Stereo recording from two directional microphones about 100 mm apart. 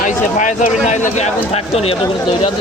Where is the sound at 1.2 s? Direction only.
90° left.